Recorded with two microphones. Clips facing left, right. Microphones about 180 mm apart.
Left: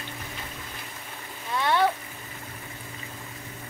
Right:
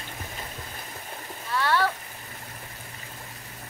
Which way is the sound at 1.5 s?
20° left (ahead or behind).